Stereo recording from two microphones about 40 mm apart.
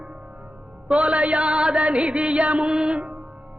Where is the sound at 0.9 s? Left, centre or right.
Right.